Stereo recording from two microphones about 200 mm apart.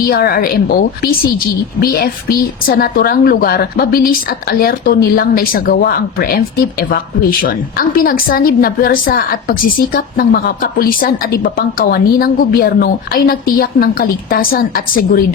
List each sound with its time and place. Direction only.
0.1 s a woman's voice: 50° left (ahead or behind)